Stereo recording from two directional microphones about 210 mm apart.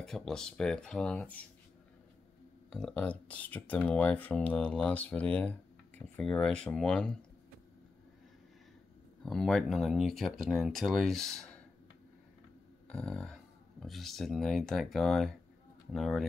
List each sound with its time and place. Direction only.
0.0 s speech: centre (ahead or behind)
2.7 s speech: 5° left (ahead or behind)
9.2 s speech: centre (ahead or behind)
12.8 s speech: 5° left (ahead or behind)